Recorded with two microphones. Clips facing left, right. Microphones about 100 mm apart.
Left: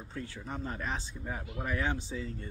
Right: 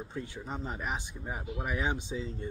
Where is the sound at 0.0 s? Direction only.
20° right (ahead or behind).